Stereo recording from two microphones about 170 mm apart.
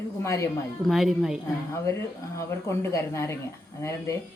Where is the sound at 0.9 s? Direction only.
Centre (ahead or behind).